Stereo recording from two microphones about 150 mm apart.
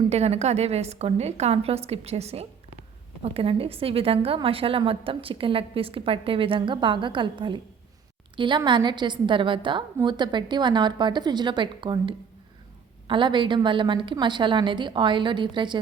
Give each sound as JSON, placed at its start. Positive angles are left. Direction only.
{"t": 0.1, "sound": "a woman's voice", "side_deg": -45}